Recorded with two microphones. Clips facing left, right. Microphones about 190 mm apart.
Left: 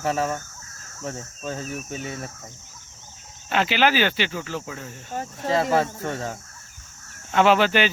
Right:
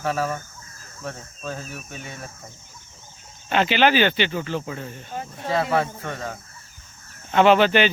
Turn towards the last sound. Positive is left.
turn(degrees=5)  # may be behind; listen again after turning